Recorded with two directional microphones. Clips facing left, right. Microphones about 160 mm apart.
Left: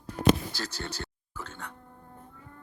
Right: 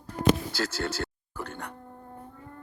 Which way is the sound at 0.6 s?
90° right.